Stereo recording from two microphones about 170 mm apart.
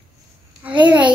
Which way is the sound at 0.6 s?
10° right (ahead or behind).